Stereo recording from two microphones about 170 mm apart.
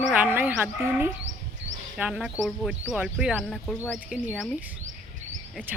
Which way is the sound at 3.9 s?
10° right (ahead or behind).